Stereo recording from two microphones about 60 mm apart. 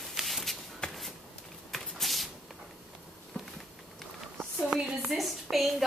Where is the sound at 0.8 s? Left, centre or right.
Centre.